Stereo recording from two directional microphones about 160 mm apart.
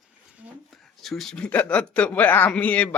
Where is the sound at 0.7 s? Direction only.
Centre (ahead or behind).